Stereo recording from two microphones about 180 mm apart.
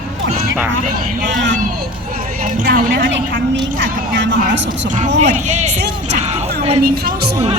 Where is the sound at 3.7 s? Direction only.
85° right.